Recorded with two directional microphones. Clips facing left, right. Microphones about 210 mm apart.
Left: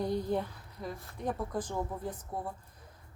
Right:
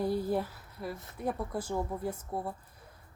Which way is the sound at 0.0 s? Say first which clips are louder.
Right 1 dB; 5° right (ahead or behind).